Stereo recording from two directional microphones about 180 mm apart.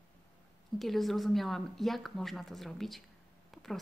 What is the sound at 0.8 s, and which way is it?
Speech, centre (ahead or behind).